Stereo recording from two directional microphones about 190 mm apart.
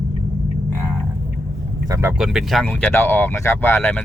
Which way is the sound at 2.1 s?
5° right (ahead or behind).